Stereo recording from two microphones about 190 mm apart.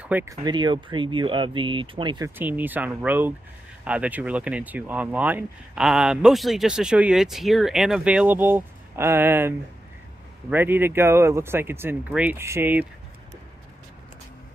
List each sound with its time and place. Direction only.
0.0 s speech: 10° right (ahead or behind)
2.3 s speech: 10° right (ahead or behind)